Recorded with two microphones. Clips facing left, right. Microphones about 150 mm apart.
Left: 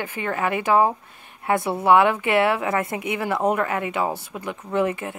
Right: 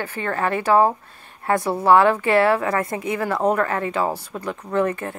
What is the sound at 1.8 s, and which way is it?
Speech, 20° left (ahead or behind).